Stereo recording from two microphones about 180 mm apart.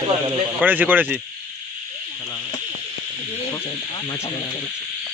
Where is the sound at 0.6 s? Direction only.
10° right (ahead or behind).